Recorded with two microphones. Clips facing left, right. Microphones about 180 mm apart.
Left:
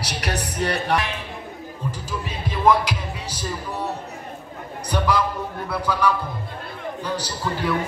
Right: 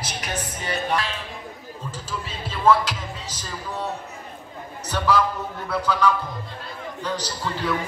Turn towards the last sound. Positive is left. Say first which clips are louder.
# left 2 dB
turn(degrees=10)  # may be behind; listen again after turning